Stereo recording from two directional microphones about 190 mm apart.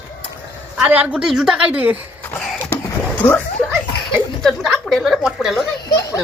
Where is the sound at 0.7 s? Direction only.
5° right (ahead or behind).